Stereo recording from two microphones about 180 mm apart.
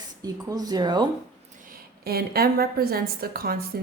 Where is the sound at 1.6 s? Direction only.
50° right (ahead or behind).